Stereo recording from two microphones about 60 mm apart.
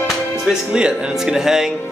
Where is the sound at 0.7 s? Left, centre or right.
Centre.